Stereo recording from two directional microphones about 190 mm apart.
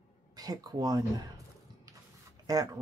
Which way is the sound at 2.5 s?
20° right (ahead or behind).